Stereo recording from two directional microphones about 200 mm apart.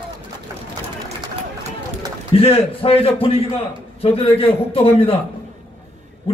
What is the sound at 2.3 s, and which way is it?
A man's voice, 30° left (ahead or behind).